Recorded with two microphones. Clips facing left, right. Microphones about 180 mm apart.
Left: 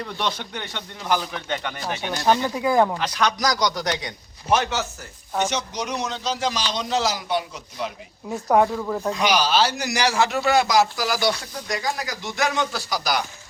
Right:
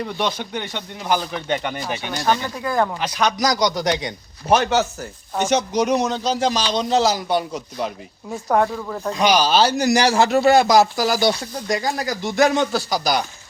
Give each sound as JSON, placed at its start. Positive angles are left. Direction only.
{"t": 0.0, "sound": "speech", "side_deg": -5}
{"t": 2.4, "sound": "speech", "side_deg": 10}
{"t": 3.0, "sound": "speech", "side_deg": -5}
{"t": 4.4, "sound": "a man's voice", "side_deg": -35}
{"t": 5.5, "sound": "a man's voice", "side_deg": -50}
{"t": 8.4, "sound": "speech", "side_deg": 5}
{"t": 9.1, "sound": "a man's voice", "side_deg": -30}